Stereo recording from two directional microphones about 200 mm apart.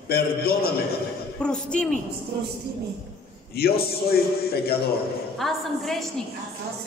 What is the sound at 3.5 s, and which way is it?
A man's voice, 50° left (ahead or behind).